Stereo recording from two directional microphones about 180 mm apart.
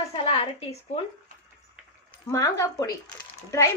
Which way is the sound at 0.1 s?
35° left (ahead or behind).